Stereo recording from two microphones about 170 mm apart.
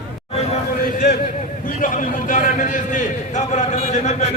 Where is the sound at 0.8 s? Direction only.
60° left (ahead or behind).